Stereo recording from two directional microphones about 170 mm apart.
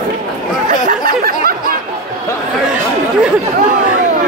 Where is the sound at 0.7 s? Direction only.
55° right (ahead or behind).